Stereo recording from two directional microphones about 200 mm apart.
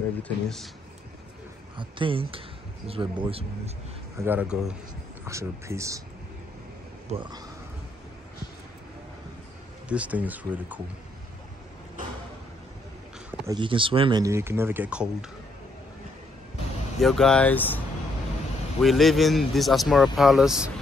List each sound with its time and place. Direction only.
0.2 s speech: 5° left (ahead or behind)
1.8 s speech: 25° right (ahead or behind)
4.2 s speech: 10° right (ahead or behind)
7.1 s speech: 30° right (ahead or behind)
9.8 s speech: 5° right (ahead or behind)
13.5 s speech: 25° right (ahead or behind); by 15.3 s 5° right (ahead or behind)
17.0 s speech: centre (ahead or behind)